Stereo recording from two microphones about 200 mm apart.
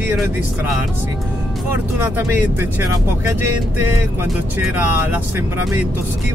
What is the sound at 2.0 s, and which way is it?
Speech, 10° right (ahead or behind).